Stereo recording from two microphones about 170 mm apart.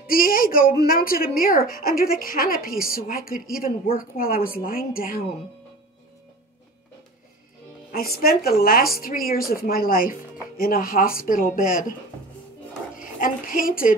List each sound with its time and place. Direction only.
0.0 s a sound: 60° left (ahead or behind)
0.8 s a woman's voice: 60° left (ahead or behind)
7.9 s a woman's voice: 60° left (ahead or behind)
12.9 s a woman's voice: 55° left (ahead or behind)